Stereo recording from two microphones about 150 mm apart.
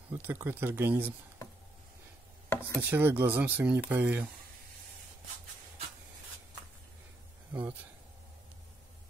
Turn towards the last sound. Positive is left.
turn(degrees=-10)  # may be behind; listen again after turning